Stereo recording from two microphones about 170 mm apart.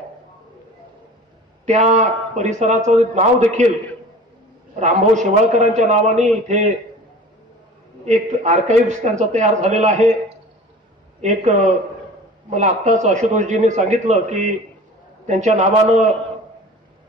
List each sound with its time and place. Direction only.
1.7 s a man's voice: 40° right (ahead or behind)
4.7 s a man's voice: 45° right (ahead or behind)
8.0 s a man's voice: 40° right (ahead or behind)
11.1 s a man's voice: 45° right (ahead or behind)